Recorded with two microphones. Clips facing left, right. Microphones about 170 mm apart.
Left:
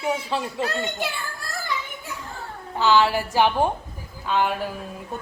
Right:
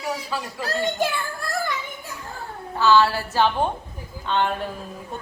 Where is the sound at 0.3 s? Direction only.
25° left (ahead or behind).